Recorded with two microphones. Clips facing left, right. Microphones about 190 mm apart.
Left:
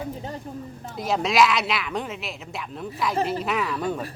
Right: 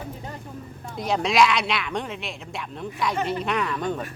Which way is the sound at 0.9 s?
Centre (ahead or behind).